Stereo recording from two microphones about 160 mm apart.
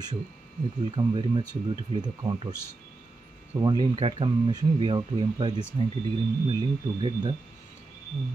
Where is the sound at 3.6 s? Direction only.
30° right (ahead or behind).